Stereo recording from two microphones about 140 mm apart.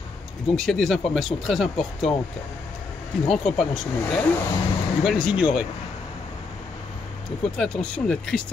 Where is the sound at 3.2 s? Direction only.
Centre (ahead or behind).